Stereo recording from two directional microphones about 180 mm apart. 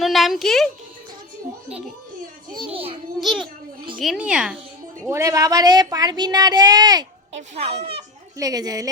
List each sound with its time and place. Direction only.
0.0 s speech: centre (ahead or behind)
2.5 s a child's voice: 30° right (ahead or behind)
3.2 s speech: centre (ahead or behind)
5.0 s speech: 15° right (ahead or behind)
7.5 s a child's voice: 35° right (ahead or behind)
8.4 s speech: 20° right (ahead or behind)